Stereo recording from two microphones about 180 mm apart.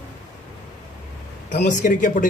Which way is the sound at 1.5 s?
45° left (ahead or behind).